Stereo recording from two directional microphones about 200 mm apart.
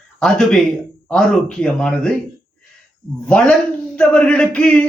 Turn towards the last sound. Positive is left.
turn(degrees=5)  # may be behind; listen again after turning